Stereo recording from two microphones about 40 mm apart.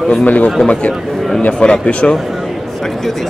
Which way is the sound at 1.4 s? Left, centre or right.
Left.